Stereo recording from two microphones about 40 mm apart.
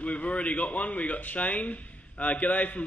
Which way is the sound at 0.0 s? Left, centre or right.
Left.